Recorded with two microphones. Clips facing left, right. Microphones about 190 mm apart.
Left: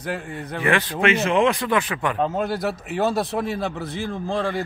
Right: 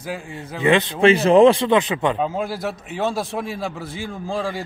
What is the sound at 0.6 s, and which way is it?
Speech, 20° right (ahead or behind).